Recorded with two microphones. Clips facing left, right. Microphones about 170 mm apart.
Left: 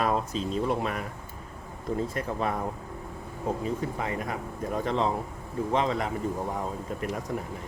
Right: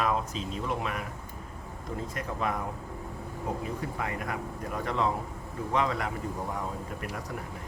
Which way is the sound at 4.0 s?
25° left (ahead or behind).